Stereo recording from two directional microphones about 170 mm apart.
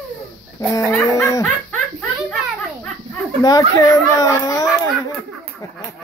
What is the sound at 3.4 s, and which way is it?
Speech, 20° left (ahead or behind).